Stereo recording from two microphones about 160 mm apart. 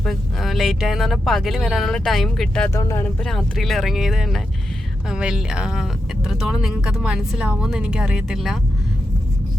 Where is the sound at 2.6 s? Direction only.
20° left (ahead or behind).